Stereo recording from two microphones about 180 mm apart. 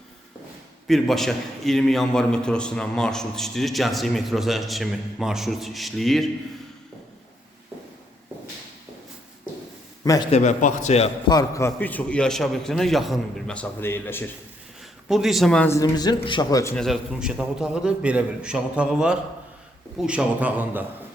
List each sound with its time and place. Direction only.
0.9 s a man's voice: centre (ahead or behind)
10.0 s a man's voice: 20° left (ahead or behind)
10.3 s a man's voice: 45° left (ahead or behind)
11.3 s a man's voice: 20° left (ahead or behind)
15.0 s a man's voice: centre (ahead or behind); by 16.7 s 20° left (ahead or behind)
16.7 s a man's voice: centre (ahead or behind)